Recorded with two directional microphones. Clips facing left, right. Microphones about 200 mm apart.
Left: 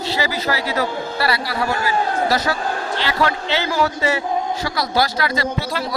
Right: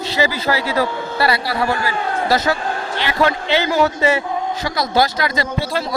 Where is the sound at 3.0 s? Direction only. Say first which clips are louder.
Right 4 dB; 15° right (ahead or behind).